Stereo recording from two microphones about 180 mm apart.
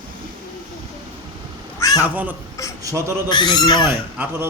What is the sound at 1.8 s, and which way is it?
Cat, 20° left (ahead or behind).